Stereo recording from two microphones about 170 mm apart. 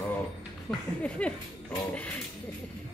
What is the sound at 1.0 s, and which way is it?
Speech, 5° left (ahead or behind).